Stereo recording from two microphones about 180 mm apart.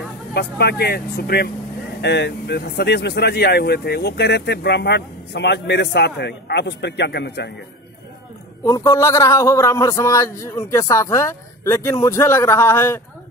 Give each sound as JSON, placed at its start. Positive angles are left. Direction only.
{"t": 0.3, "sound": "speech", "side_deg": 65}
{"t": 8.6, "sound": "a man's voice", "side_deg": 20}